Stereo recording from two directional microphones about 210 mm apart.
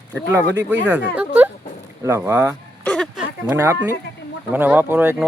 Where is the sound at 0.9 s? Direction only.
5° right (ahead or behind).